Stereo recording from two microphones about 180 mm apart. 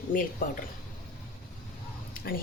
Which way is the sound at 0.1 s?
50° left (ahead or behind).